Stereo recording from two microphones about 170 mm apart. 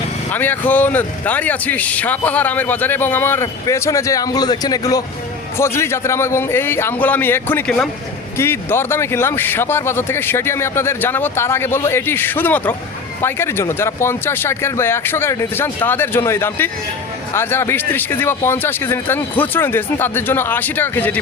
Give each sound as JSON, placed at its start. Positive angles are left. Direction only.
{"t": 0.3, "sound": "speech", "side_deg": 10}